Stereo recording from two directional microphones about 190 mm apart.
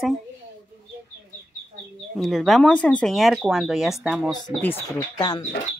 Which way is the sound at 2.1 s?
Centre (ahead or behind).